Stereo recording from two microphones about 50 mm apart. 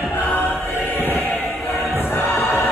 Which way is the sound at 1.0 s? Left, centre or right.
Left.